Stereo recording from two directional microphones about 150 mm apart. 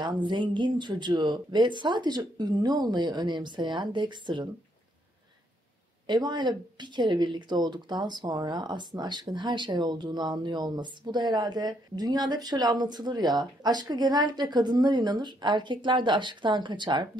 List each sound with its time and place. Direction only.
0.0 s speech: 30° right (ahead or behind)
6.0 s speech: 30° right (ahead or behind)